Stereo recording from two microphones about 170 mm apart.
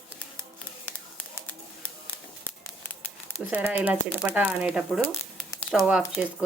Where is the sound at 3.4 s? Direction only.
10° right (ahead or behind).